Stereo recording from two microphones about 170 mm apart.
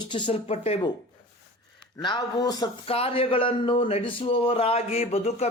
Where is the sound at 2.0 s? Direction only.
25° left (ahead or behind).